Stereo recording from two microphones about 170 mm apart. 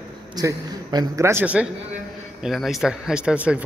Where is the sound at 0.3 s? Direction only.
20° right (ahead or behind).